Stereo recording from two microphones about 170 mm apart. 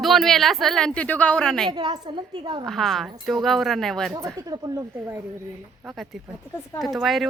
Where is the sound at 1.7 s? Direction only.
25° right (ahead or behind).